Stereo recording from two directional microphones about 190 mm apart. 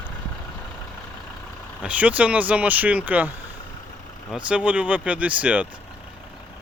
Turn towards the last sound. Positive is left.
turn(degrees=-5)  # may be behind; listen again after turning